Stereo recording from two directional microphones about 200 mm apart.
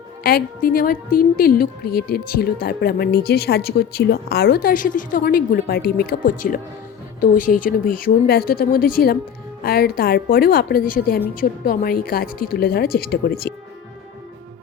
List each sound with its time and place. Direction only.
0.2 s speech: 50° left (ahead or behind)